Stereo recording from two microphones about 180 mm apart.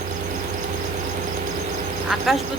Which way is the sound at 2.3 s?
Centre (ahead or behind).